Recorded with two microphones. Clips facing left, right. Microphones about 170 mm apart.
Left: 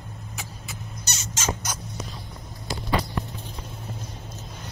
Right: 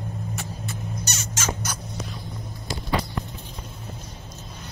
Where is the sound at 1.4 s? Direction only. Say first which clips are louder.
Left 1 dB; 15° left (ahead or behind).